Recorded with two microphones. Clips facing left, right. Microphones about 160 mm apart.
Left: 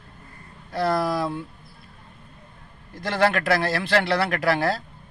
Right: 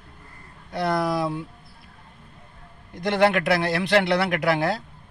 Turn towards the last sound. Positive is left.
turn(degrees=-20)  # may be behind; listen again after turning